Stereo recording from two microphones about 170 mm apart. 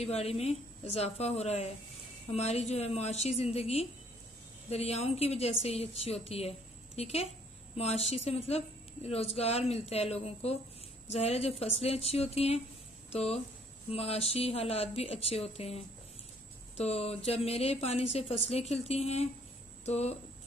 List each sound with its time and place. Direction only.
0.0 s a woman's voice: 40° left (ahead or behind)